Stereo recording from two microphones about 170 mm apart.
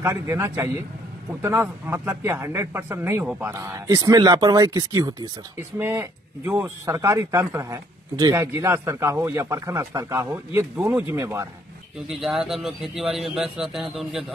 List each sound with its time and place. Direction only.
0.0 s speech: 15° right (ahead or behind)
12.1 s a man's voice: centre (ahead or behind)